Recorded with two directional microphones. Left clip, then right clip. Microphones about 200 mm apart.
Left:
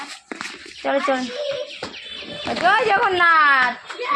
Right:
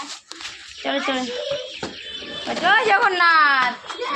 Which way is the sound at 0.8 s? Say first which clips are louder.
Left 3 dB; 15° left (ahead or behind).